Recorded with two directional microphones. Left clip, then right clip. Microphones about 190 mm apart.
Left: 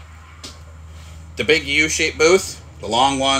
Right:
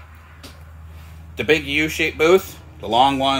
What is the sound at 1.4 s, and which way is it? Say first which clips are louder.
Speech: left 2 dB; 5° right (ahead or behind).